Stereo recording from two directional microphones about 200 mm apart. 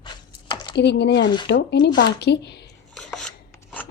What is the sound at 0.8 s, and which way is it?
Speech, 60° left (ahead or behind).